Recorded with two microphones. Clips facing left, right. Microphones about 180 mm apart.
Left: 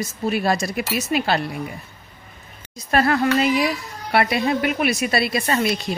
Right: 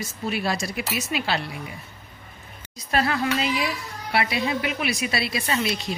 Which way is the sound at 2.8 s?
50° left (ahead or behind).